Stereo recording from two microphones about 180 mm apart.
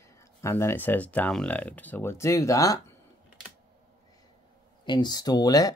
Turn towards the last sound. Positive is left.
turn(degrees=20)  # may be behind; listen again after turning